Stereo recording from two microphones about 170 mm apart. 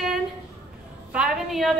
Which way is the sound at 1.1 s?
Centre (ahead or behind).